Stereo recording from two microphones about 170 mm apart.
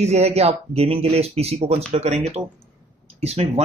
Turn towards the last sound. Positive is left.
turn(degrees=-40)  # may be behind; listen again after turning